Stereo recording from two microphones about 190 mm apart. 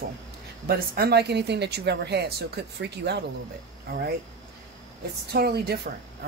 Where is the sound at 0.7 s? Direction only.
55° right (ahead or behind).